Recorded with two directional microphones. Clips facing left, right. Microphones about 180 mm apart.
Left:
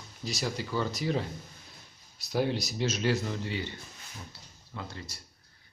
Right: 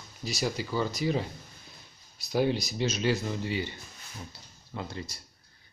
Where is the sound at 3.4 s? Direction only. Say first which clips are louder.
Right 3 dB; 10° right (ahead or behind).